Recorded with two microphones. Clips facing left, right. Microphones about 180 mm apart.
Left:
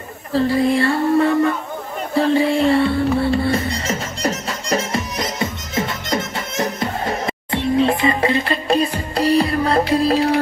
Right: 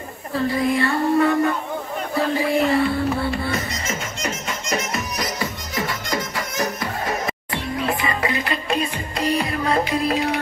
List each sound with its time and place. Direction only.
0.3 s music: 30° left (ahead or behind)